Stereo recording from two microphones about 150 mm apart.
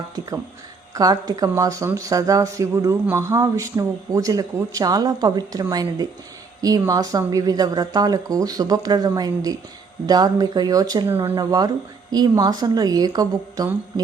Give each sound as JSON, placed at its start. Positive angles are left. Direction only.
{"t": 0.9, "sound": "a woman's voice", "side_deg": -25}